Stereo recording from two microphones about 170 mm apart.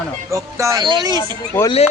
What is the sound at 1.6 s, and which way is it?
Speech, 35° left (ahead or behind).